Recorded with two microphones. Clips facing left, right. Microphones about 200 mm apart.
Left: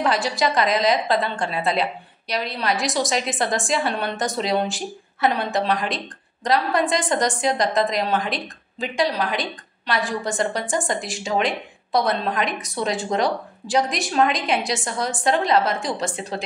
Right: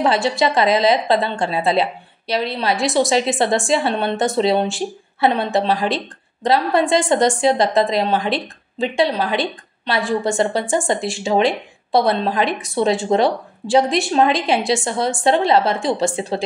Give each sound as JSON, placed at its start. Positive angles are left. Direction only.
{"t": 0.0, "sound": "a woman's voice", "side_deg": -25}